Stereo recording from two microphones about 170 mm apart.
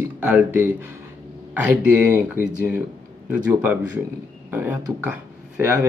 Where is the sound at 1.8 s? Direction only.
10° right (ahead or behind).